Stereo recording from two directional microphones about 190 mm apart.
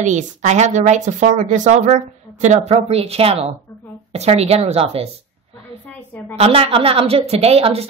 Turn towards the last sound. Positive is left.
turn(degrees=-30)  # may be behind; listen again after turning